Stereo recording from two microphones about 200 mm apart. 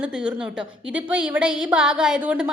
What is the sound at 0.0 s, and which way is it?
A woman's voice, 5° right (ahead or behind).